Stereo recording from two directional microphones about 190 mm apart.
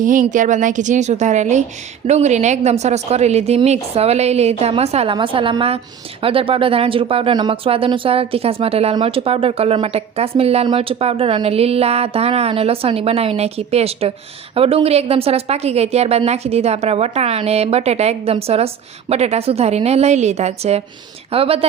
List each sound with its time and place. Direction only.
0.0 s speech: 45° right (ahead or behind)